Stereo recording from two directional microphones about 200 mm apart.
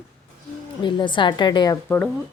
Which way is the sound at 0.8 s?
25° left (ahead or behind).